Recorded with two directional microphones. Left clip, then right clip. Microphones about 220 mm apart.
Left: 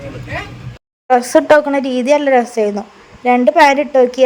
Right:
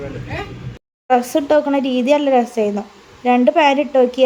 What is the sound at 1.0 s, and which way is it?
A woman's voice, 20° left (ahead or behind).